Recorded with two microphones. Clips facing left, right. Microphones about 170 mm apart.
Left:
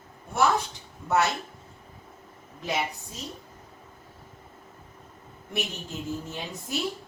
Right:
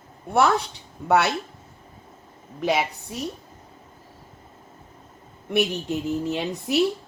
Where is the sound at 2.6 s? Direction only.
70° right (ahead or behind).